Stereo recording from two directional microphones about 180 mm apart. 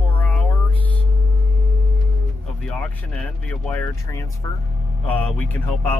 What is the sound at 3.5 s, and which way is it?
Speech, 5° left (ahead or behind).